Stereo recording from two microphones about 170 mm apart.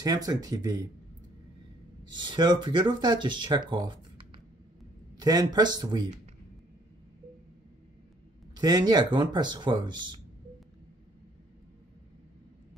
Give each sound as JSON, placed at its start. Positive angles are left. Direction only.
{"t": 0.0, "sound": "speech", "side_deg": -20}
{"t": 2.1, "sound": "speech", "side_deg": -25}
{"t": 8.5, "sound": "speech", "side_deg": -25}